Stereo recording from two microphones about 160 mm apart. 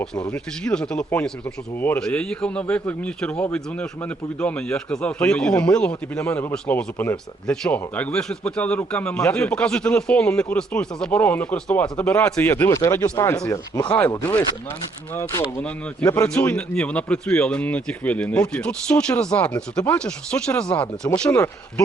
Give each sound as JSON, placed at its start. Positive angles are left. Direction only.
{"t": 0.3, "sound": "a man's voice", "side_deg": 5}
{"t": 15.1, "sound": "a man's voice", "side_deg": 15}
{"t": 16.3, "sound": "a man's voice", "side_deg": 5}